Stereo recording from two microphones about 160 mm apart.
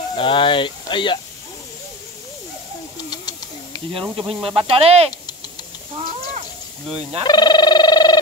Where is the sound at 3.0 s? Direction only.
25° left (ahead or behind).